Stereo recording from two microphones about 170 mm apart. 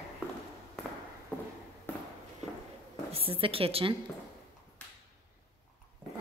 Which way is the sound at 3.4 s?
35° right (ahead or behind).